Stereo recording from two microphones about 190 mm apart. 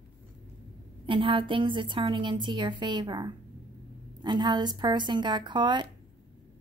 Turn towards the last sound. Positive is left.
turn(degrees=-25)  # may be behind; listen again after turning